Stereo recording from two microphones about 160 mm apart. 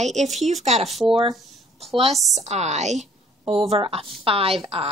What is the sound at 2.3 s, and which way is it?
A woman's voice, 45° right (ahead or behind).